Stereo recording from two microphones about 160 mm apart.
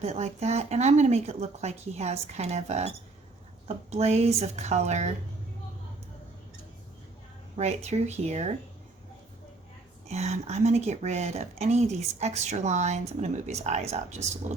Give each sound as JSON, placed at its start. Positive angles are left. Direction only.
{"t": 0.0, "sound": "speech", "side_deg": -45}
{"t": 7.5, "sound": "speech", "side_deg": -45}
{"t": 10.1, "sound": "speech", "side_deg": -45}